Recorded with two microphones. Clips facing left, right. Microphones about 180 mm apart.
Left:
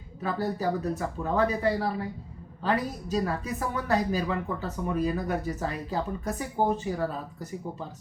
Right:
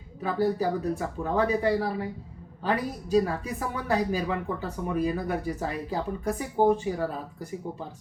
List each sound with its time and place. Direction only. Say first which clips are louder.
0.2 s a woman's voice: right 4 dB; 10° right (ahead or behind)